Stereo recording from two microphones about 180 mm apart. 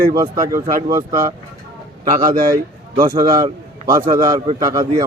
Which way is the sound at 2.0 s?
50° right (ahead or behind).